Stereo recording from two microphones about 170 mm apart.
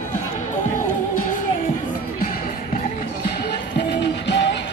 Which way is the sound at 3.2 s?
75° left (ahead or behind).